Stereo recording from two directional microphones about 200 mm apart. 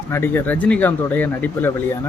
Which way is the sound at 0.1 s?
10° left (ahead or behind).